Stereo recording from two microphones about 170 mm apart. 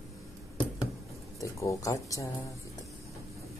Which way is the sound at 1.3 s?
20° left (ahead or behind).